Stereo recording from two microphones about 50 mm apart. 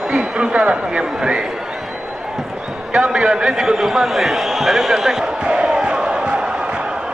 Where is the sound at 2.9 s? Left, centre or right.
Centre.